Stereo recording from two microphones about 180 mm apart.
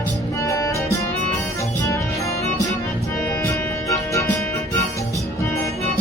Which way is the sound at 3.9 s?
15° left (ahead or behind).